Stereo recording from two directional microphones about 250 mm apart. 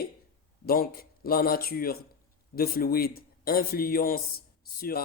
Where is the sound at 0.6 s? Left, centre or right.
Left.